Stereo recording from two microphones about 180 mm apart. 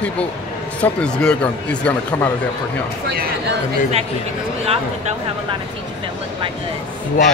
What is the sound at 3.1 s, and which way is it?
Speech, 65° right (ahead or behind).